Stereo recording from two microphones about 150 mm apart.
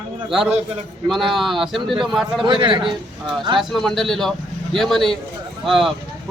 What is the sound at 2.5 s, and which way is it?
Speech, 35° right (ahead or behind).